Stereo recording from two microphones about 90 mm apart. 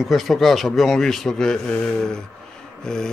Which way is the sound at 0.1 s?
Centre (ahead or behind).